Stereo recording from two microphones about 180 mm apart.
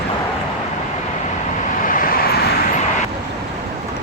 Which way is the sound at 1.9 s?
50° left (ahead or behind).